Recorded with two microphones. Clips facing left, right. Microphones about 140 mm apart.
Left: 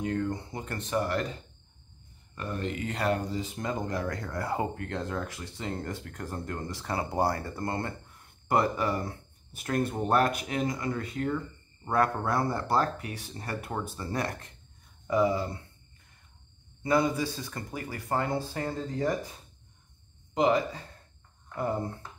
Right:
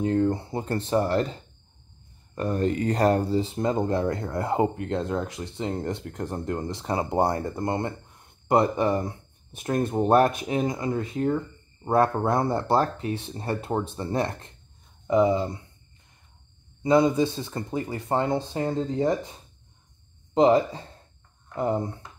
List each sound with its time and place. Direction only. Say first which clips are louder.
0.0 s speech: right 7 dB; 30° right (ahead or behind)
16.8 s speech: right 6 dB; 20° right (ahead or behind)
20.3 s speech: right 6 dB; 30° right (ahead or behind)